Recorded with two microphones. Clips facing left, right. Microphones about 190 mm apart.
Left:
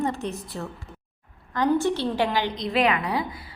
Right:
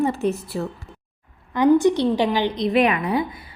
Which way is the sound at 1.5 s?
15° right (ahead or behind).